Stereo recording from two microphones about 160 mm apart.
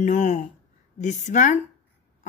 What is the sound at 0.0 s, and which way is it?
A woman's voice, 50° left (ahead or behind).